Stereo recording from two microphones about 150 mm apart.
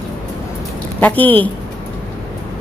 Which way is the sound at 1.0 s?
10° left (ahead or behind).